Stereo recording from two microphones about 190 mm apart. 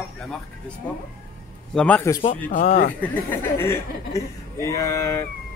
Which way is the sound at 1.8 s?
10° left (ahead or behind).